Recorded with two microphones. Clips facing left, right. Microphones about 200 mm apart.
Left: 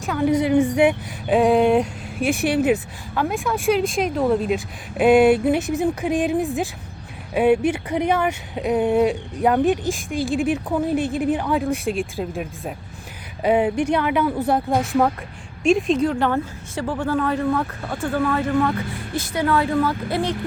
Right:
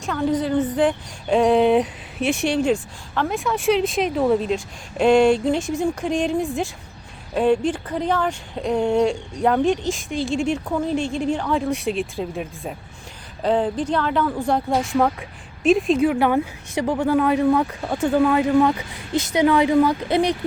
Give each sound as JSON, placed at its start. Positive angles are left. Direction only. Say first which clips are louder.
{"t": 0.0, "sound": "speech", "louder": "left 2 dB", "side_deg": 5}